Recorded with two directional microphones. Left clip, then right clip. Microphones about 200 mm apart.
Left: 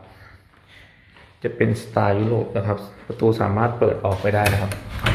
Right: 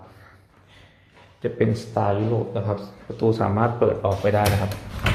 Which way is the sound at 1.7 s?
15° left (ahead or behind).